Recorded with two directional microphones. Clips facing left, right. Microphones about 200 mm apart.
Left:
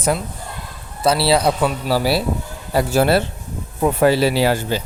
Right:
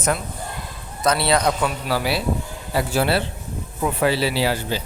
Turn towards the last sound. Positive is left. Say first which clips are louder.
# left 4 dB
turn(degrees=50)  # may be behind; listen again after turning